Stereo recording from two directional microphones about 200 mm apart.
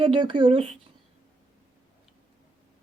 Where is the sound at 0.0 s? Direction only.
25° right (ahead or behind).